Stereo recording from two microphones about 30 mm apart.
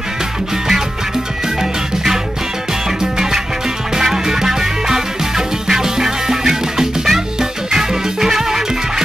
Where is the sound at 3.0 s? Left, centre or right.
Centre.